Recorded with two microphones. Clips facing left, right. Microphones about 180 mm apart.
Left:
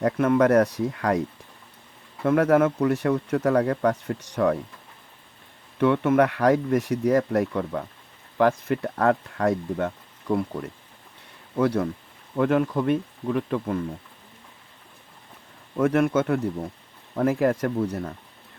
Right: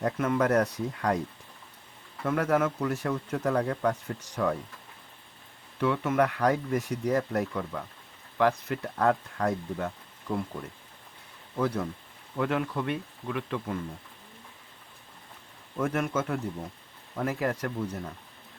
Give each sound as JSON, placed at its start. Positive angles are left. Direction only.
{"t": 0.0, "sound": "speech", "side_deg": 60}
{"t": 2.2, "sound": "speech", "side_deg": 55}
{"t": 5.8, "sound": "speech", "side_deg": 55}
{"t": 11.5, "sound": "speech", "side_deg": 70}
{"t": 12.4, "sound": "speech", "side_deg": 50}
{"t": 15.8, "sound": "speech", "side_deg": 65}
{"t": 17.2, "sound": "speech", "side_deg": 50}